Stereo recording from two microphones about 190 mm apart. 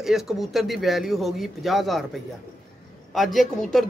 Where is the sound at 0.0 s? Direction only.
Centre (ahead or behind).